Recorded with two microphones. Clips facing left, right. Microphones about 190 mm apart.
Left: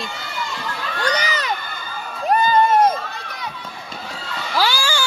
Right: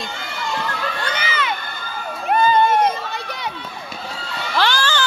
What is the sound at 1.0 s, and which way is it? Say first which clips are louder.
Children shouting: left 7 dB; 40° left (ahead or behind).